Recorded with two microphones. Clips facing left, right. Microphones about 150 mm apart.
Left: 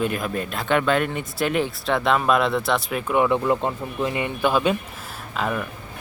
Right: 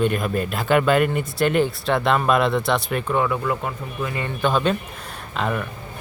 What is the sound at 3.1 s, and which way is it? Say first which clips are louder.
Speech: left 4 dB; 20° left (ahead or behind).